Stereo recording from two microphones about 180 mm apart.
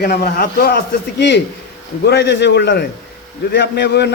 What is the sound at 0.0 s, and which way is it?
Speech, 55° left (ahead or behind).